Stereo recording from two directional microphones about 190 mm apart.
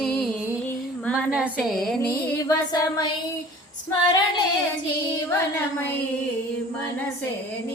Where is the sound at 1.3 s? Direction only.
5° right (ahead or behind).